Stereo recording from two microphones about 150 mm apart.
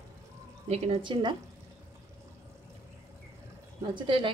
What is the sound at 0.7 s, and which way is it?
Speech, 45° right (ahead or behind).